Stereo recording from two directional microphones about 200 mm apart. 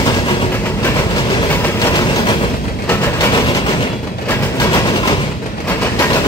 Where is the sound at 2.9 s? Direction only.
15° left (ahead or behind).